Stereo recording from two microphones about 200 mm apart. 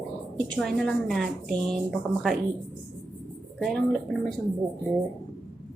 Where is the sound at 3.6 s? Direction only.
Centre (ahead or behind).